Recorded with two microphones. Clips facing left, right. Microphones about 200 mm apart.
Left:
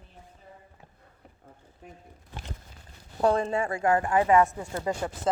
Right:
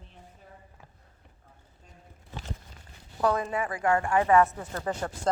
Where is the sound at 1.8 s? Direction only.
65° left (ahead or behind).